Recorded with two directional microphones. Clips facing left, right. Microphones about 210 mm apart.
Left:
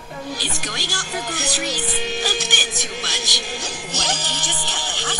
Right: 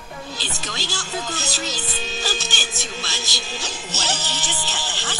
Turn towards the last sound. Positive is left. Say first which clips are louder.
# left 2 dB
turn(degrees=15)  # may be behind; listen again after turning